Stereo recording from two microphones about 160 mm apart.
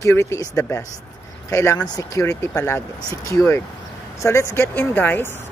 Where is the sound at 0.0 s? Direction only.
15° left (ahead or behind).